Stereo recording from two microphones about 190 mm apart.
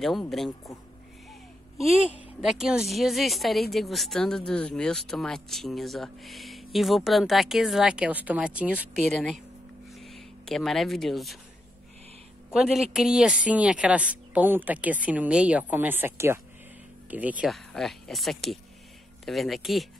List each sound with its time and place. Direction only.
0.0 s speech: centre (ahead or behind)
1.8 s speech: centre (ahead or behind)
9.9 s a sound: centre (ahead or behind)
12.5 s a woman's voice: 5° right (ahead or behind)